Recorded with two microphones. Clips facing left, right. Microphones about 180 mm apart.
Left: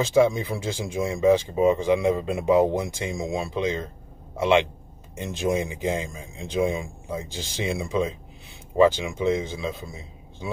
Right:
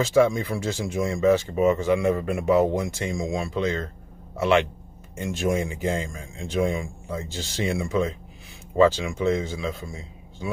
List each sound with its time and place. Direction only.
0.0 s speech: 15° left (ahead or behind)